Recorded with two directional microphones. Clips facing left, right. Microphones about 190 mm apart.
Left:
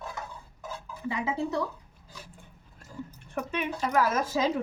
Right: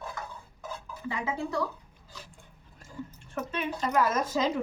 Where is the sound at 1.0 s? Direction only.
20° left (ahead or behind).